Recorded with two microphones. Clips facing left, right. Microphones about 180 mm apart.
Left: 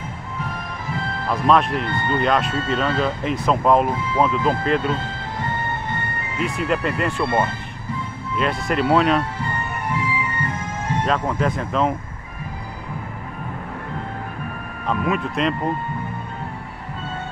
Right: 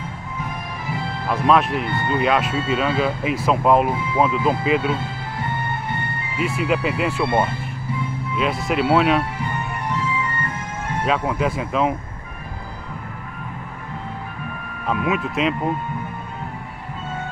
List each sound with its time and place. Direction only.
1.2 s speech: 5° right (ahead or behind)
6.3 s speech: 5° right (ahead or behind)
11.1 s speech: 5° right (ahead or behind)
14.9 s speech: 5° right (ahead or behind)